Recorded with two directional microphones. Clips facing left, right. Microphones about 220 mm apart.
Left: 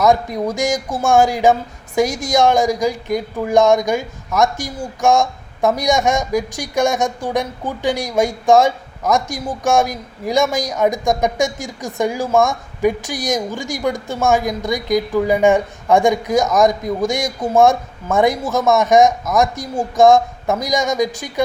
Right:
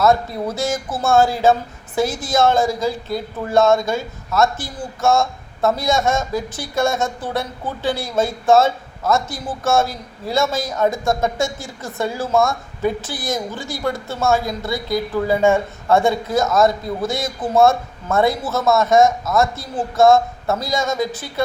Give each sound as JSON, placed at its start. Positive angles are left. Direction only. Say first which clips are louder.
{"t": 0.0, "sound": "speech", "louder": "left 2 dB", "side_deg": 15}